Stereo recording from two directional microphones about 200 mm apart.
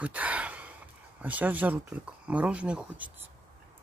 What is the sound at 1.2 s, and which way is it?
Speech, 10° right (ahead or behind).